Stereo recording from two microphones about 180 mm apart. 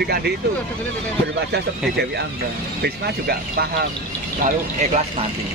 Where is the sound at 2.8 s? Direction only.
60° right (ahead or behind).